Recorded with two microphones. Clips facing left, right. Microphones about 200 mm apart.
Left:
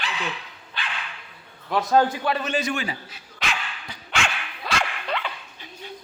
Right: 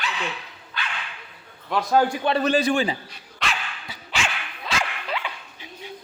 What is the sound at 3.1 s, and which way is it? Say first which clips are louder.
Dog: right 1 dB; centre (ahead or behind).